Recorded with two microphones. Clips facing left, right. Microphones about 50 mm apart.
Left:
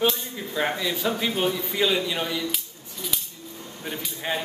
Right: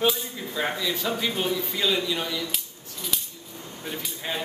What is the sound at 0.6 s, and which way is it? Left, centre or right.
A man's voice, centre.